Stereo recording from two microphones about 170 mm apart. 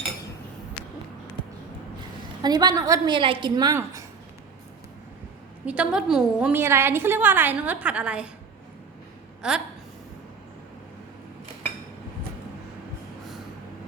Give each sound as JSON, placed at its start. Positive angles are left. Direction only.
{"t": 2.4, "sound": "a woman's voice", "side_deg": -25}
{"t": 5.6, "sound": "a woman's voice", "side_deg": -5}
{"t": 6.6, "sound": "a woman's voice", "side_deg": -15}
{"t": 9.4, "sound": "a woman's voice", "side_deg": -5}